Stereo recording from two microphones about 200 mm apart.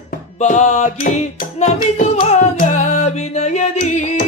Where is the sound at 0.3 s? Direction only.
35° left (ahead or behind).